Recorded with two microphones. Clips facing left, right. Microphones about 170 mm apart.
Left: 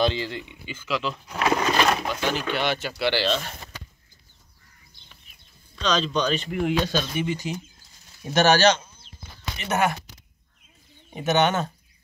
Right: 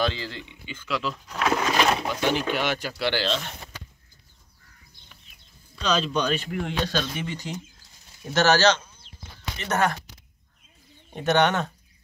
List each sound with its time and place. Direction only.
0.0 s speech: 20° left (ahead or behind)
0.7 s speech: 5° left (ahead or behind)
2.1 s speech: 15° right (ahead or behind)
3.0 s speech: 10° left (ahead or behind)
5.8 s speech: 5° right (ahead or behind)
6.5 s speech: 10° left (ahead or behind)
11.1 s speech: 5° left (ahead or behind)